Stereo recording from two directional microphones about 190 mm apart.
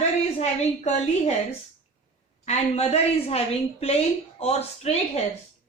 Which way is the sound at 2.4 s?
35° left (ahead or behind).